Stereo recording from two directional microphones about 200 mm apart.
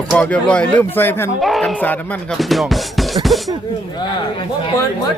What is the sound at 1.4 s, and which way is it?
Speech, centre (ahead or behind).